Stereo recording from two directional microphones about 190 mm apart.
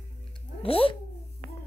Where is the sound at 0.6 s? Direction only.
30° left (ahead or behind).